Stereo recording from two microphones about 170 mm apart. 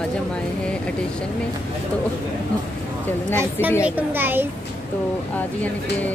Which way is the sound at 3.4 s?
10° right (ahead or behind).